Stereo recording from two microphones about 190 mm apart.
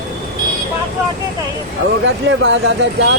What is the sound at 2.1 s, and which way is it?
Speech, 75° right (ahead or behind).